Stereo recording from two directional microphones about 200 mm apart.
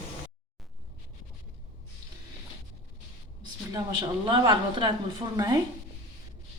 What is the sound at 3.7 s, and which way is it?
A woman's voice, 20° right (ahead or behind).